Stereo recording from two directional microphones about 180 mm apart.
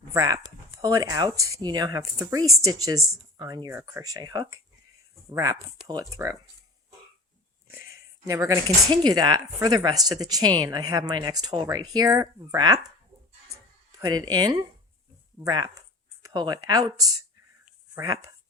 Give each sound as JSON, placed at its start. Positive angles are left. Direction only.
{"t": 0.1, "sound": "speech", "side_deg": -20}
{"t": 8.2, "sound": "speech", "side_deg": -20}
{"t": 14.0, "sound": "speech", "side_deg": -20}